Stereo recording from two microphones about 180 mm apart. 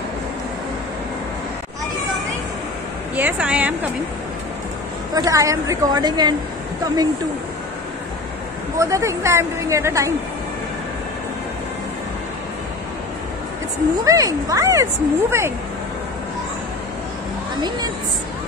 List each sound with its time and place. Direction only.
3.2 s speech: 10° right (ahead or behind)
5.1 s a woman's voice: 20° right (ahead or behind)
8.7 s speech: 15° right (ahead or behind)
14.0 s speech: 20° right (ahead or behind)
17.6 s a woman's voice: 25° right (ahead or behind)